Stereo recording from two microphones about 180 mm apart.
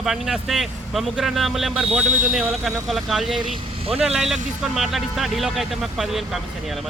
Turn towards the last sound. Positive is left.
turn(degrees=0)  # may be behind; listen again after turning